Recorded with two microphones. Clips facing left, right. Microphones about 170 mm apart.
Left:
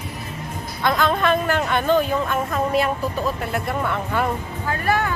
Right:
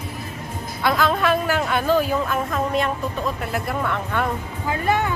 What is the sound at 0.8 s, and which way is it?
Speech, 5° right (ahead or behind).